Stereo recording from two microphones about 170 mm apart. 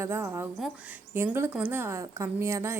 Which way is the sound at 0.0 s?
15° right (ahead or behind).